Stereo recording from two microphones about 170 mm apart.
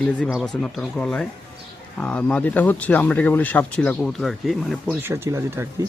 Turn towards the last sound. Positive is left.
turn(degrees=-15)  # may be behind; listen again after turning